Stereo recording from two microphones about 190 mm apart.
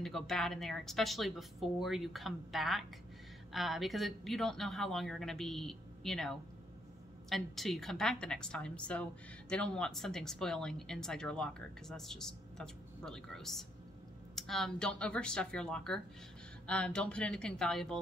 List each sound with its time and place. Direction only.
0.0 s speech: centre (ahead or behind)